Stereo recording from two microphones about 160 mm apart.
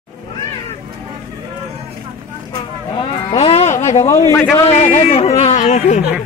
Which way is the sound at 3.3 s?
35° left (ahead or behind).